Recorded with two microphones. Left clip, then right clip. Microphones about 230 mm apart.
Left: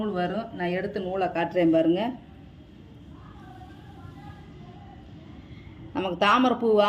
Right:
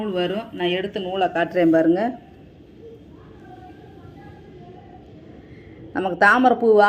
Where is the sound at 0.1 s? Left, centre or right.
Centre.